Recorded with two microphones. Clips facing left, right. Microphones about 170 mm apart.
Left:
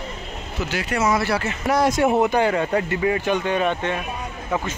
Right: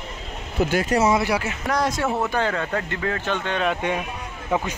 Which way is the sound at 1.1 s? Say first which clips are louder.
Even; 15° right (ahead or behind).